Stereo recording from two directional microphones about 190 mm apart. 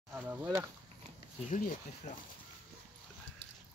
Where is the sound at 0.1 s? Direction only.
10° right (ahead or behind).